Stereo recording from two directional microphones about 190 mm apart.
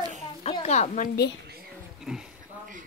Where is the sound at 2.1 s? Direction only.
5° right (ahead or behind).